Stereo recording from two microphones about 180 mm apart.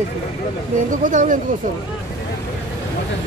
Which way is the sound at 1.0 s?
45° right (ahead or behind).